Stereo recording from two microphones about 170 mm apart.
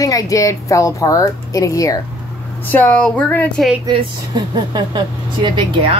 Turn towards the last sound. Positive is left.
turn(degrees=-30)  # may be behind; listen again after turning